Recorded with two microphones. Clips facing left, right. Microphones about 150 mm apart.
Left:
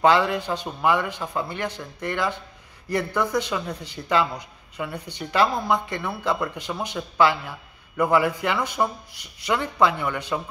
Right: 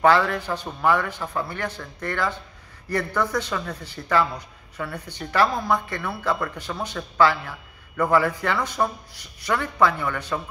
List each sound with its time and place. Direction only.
0.0 s a man's voice: 15° left (ahead or behind)